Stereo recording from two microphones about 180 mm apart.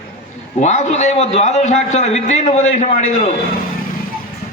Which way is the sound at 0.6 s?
40° left (ahead or behind).